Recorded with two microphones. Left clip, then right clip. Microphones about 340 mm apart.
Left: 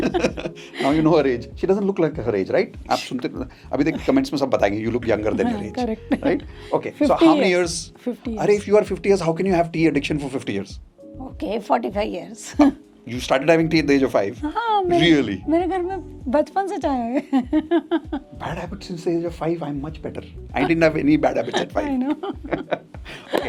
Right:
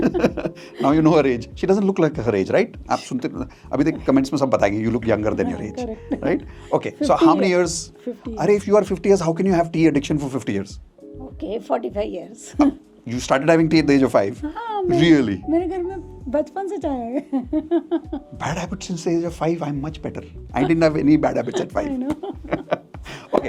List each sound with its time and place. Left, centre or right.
0.2 s speech: right
8.0 s a woman's voice: centre
8.4 s speech: right
11.3 s a woman's voice: centre
13.1 s speech: right
14.4 s speech: left
14.8 s speech: right
15.4 s a woman's voice: left
18.3 s speech: right
21.9 s a woman's voice: centre
22.4 s speech: right